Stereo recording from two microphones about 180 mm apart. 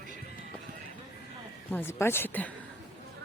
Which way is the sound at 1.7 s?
15° left (ahead or behind).